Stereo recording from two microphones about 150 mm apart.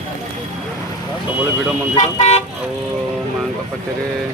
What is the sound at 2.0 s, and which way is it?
Speech, 50° left (ahead or behind).